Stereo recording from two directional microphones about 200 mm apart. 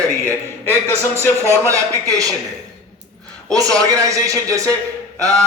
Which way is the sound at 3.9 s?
15° right (ahead or behind).